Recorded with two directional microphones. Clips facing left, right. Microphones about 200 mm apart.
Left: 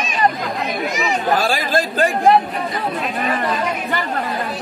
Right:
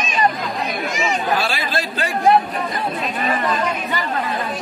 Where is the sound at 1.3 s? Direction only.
45° left (ahead or behind).